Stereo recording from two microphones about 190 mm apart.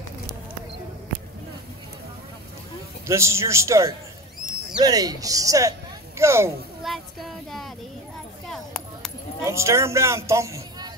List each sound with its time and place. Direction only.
3.1 s a man's voice: 15° right (ahead or behind)
6.8 s child singing: centre (ahead or behind)
8.5 s a sound: 5° left (ahead or behind)
9.4 s a man's voice: 15° right (ahead or behind)